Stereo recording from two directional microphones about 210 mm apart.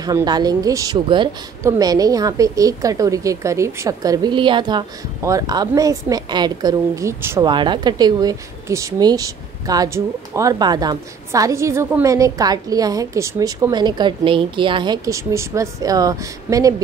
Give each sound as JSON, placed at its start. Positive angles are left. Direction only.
{"t": 0.0, "sound": "a woman's voice", "side_deg": -20}